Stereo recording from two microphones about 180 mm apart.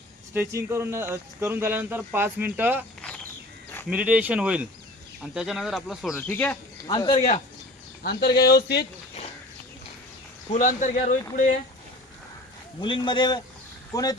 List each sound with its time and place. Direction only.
0.3 s speech: 15° right (ahead or behind)
3.8 s speech: 5° right (ahead or behind)
6.1 s speech: 10° left (ahead or behind)
6.8 s speech: 25° left (ahead or behind)
8.0 s speech: 60° left (ahead or behind)
10.5 s speech: 45° left (ahead or behind)
12.8 s speech: 25° left (ahead or behind)